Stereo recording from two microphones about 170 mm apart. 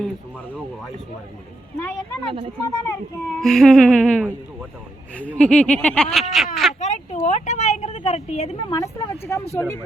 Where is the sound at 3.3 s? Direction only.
Centre (ahead or behind).